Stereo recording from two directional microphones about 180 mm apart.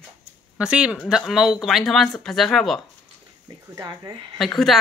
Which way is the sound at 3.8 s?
20° right (ahead or behind).